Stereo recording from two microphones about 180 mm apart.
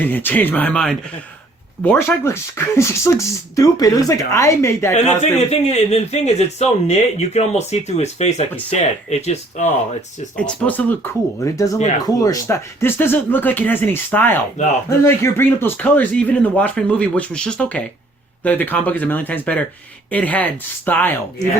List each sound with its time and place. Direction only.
0.0 s speech: 10° left (ahead or behind)
4.9 s speech: 35° left (ahead or behind)
10.3 s speech: 5° left (ahead or behind)